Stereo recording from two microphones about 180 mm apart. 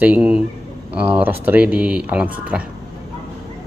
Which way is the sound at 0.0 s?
10° right (ahead or behind).